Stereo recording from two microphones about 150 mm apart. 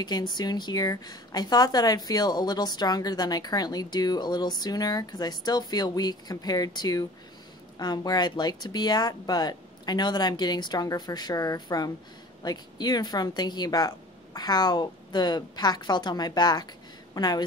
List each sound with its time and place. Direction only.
0.0 s a woman's voice: 30° left (ahead or behind)